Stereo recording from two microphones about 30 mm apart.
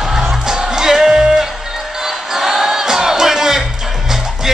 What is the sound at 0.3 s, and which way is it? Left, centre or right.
Music, centre.